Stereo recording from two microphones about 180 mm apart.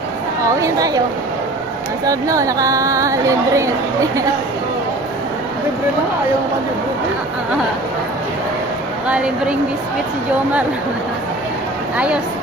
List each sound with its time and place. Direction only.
0.6 s a woman's voice: 20° right (ahead or behind)
2.0 s speech: 20° right (ahead or behind)
9.0 s speech: 5° right (ahead or behind)
11.9 s speech: 5° right (ahead or behind)